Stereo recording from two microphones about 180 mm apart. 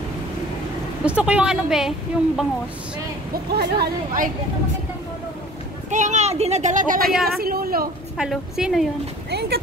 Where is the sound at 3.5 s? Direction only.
60° right (ahead or behind).